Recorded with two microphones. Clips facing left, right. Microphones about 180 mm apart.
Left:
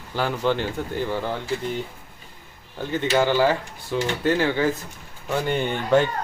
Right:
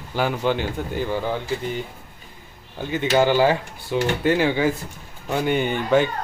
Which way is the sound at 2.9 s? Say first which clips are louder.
Right 2 dB; 15° right (ahead or behind).